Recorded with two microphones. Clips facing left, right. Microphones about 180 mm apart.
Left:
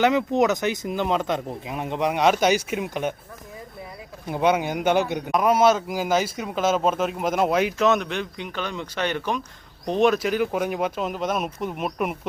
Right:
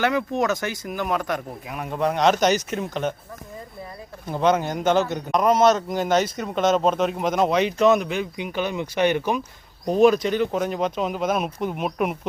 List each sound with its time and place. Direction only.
0.0 s speech: 20° left (ahead or behind)
4.3 s speech: 10° left (ahead or behind)